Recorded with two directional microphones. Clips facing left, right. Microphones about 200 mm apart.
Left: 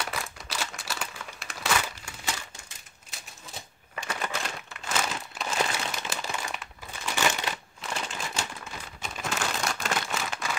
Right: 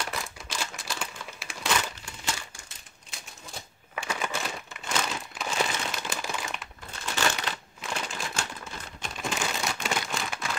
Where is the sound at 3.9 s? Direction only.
10° right (ahead or behind).